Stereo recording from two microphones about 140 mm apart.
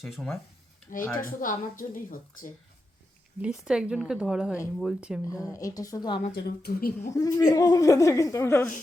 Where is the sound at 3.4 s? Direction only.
5° right (ahead or behind).